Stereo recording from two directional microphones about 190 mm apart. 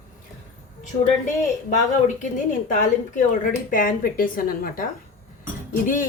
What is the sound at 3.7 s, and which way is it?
A woman's voice, 45° left (ahead or behind).